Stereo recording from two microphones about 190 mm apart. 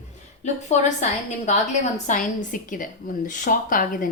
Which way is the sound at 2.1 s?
45° left (ahead or behind).